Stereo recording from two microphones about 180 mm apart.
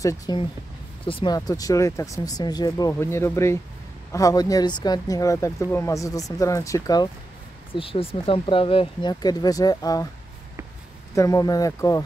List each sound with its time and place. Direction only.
0.0 s speech: 20° left (ahead or behind)
7.7 s speech: 30° left (ahead or behind)
11.1 s speech: 20° left (ahead or behind)